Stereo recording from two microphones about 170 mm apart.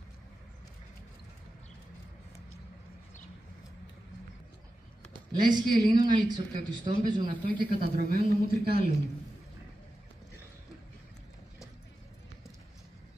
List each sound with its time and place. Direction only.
5.1 s a man's voice: 25° right (ahead or behind)
7.8 s speech: 65° right (ahead or behind)